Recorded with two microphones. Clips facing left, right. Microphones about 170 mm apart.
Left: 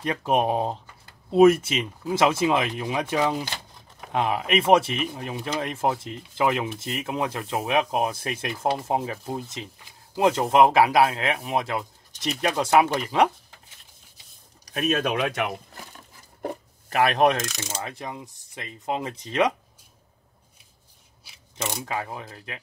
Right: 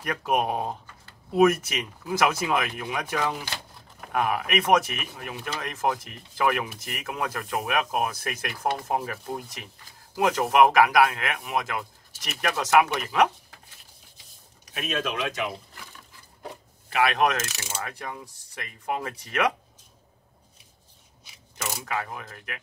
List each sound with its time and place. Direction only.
0.0 s speech: 25° left (ahead or behind)
14.6 s speech: 40° left (ahead or behind); by 15.5 s 60° left (ahead or behind)
16.9 s speech: 40° left (ahead or behind)
17.8 s speech: 20° left (ahead or behind)
21.8 s speech: 25° left (ahead or behind)